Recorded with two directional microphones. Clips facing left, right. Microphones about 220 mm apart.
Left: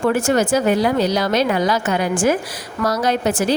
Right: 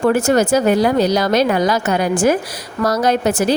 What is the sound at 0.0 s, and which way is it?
A woman's voice, 40° right (ahead or behind).